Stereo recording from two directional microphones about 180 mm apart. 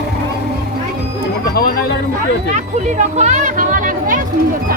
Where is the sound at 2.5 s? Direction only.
40° right (ahead or behind).